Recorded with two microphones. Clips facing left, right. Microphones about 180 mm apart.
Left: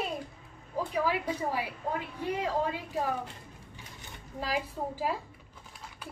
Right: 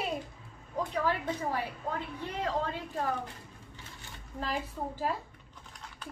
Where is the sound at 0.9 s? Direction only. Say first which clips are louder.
Left 2 dB; 10° left (ahead or behind).